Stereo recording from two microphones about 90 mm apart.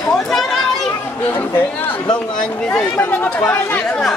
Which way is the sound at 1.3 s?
25° left (ahead or behind).